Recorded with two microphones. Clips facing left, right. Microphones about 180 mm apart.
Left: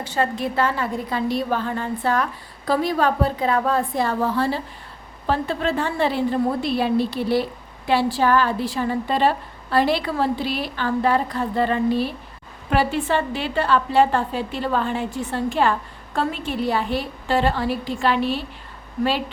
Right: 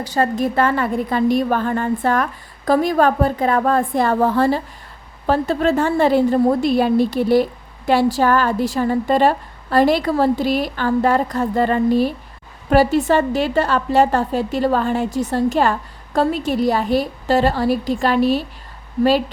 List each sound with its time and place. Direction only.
0.0 s a woman's voice: 40° right (ahead or behind)